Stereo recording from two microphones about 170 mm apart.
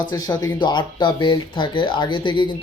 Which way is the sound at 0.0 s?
25° left (ahead or behind).